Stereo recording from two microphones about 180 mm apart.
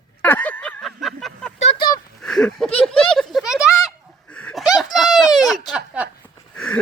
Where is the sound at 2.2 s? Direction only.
5° left (ahead or behind).